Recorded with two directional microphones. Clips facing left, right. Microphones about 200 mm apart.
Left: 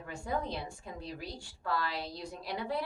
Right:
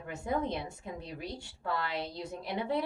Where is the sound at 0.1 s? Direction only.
20° right (ahead or behind).